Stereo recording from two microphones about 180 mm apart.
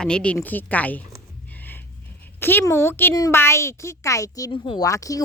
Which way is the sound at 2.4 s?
10° left (ahead or behind).